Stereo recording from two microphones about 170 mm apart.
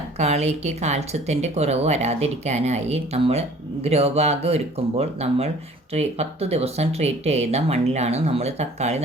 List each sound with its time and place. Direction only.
0.2 s speech: 40° right (ahead or behind)